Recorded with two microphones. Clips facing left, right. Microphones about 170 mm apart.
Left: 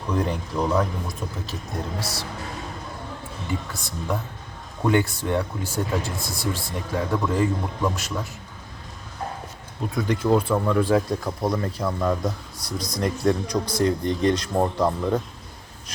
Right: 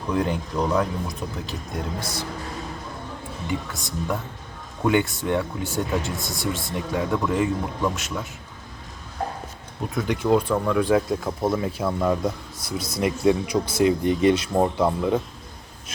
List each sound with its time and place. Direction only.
0.1 s speech: centre (ahead or behind)
3.7 s speech: centre (ahead or behind)
9.9 s speech: centre (ahead or behind)